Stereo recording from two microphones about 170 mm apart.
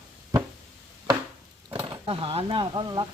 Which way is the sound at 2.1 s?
35° right (ahead or behind).